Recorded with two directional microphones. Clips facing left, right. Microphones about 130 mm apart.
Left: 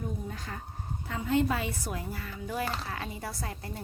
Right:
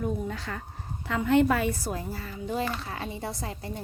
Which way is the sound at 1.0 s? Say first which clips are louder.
Right 6 dB; 80° right.